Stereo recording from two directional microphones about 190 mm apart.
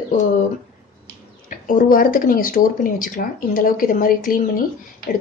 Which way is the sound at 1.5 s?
45° left (ahead or behind).